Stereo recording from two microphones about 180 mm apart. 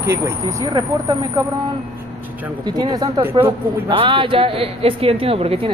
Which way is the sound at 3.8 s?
25° right (ahead or behind).